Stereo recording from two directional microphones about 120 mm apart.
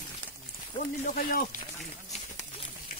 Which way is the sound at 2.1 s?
90° left.